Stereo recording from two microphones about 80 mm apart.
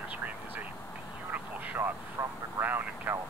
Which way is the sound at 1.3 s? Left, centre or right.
Centre.